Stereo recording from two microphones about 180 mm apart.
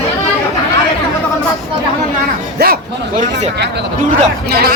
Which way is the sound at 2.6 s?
60° right (ahead or behind).